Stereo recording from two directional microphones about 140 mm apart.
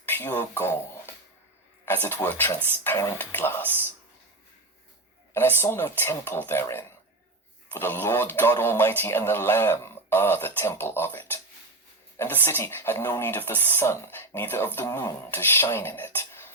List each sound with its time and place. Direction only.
0.0 s a sound: 15° left (ahead or behind)
1.8 s speech: 15° left (ahead or behind)
5.3 s speech: 15° left (ahead or behind)